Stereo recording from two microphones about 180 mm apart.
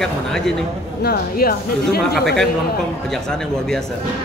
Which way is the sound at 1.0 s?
60° left (ahead or behind).